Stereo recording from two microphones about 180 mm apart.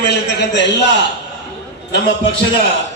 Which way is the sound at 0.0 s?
70° left (ahead or behind).